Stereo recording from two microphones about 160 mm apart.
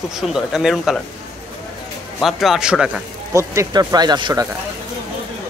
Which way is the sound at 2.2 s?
Centre (ahead or behind).